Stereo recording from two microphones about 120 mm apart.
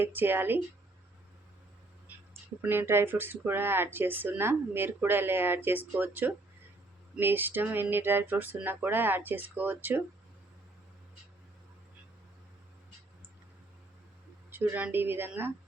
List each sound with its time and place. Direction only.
0.0 s speech: 15° right (ahead or behind)
2.1 s a sound: 15° right (ahead or behind)
2.6 s speech: 20° right (ahead or behind)
14.5 s speech: 15° right (ahead or behind)